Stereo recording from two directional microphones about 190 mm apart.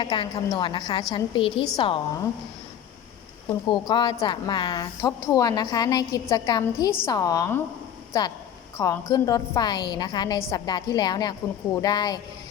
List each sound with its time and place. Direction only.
0.0 s a woman's voice: 25° left (ahead or behind)
3.7 s a woman's voice: 25° left (ahead or behind)